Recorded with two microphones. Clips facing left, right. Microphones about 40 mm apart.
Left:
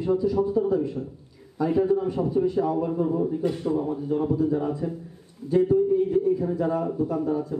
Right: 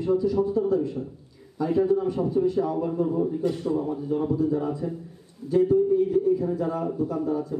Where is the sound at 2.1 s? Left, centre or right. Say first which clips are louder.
Even; centre.